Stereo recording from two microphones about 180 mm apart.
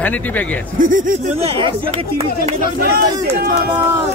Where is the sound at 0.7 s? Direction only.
45° right (ahead or behind).